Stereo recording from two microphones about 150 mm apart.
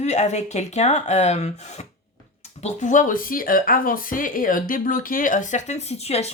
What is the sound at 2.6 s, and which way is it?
Speech, 55° left (ahead or behind).